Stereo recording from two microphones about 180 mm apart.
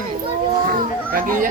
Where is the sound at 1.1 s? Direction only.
50° right (ahead or behind).